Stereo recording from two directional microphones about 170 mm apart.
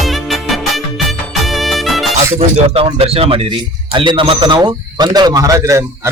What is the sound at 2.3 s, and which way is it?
Speech, 40° right (ahead or behind).